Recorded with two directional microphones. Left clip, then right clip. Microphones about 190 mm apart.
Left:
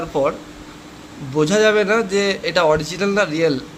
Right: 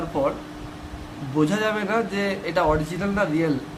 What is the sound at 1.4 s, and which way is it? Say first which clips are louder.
A man's voice: left 8 dB; 25° left (ahead or behind).